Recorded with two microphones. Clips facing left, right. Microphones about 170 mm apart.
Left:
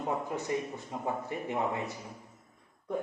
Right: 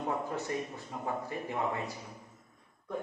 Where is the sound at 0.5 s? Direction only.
20° left (ahead or behind).